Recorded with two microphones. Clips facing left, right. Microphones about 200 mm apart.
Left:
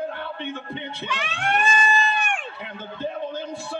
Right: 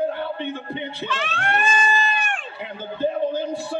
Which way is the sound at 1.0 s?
15° left (ahead or behind).